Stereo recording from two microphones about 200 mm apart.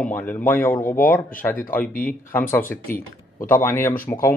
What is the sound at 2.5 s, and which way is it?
Speech, 10° left (ahead or behind).